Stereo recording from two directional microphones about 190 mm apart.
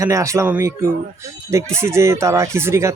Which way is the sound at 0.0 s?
15° right (ahead or behind).